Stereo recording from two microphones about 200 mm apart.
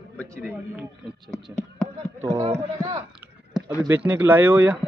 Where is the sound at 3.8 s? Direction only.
10° right (ahead or behind).